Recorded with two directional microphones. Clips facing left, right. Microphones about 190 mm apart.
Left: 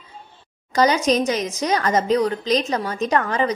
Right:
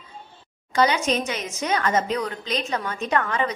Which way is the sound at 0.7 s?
40° left (ahead or behind).